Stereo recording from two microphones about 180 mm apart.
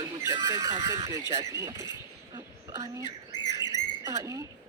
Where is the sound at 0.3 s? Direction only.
15° right (ahead or behind).